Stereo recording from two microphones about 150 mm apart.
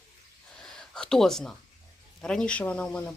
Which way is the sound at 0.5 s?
5° left (ahead or behind).